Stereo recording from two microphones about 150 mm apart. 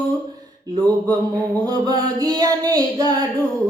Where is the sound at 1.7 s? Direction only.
25° right (ahead or behind).